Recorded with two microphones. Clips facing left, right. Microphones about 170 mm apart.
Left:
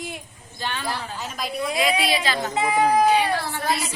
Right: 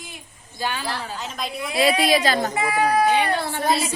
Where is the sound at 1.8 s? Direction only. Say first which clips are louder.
Right 6 dB; 40° right (ahead or behind).